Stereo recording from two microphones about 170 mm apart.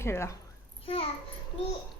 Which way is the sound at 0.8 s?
35° left (ahead or behind).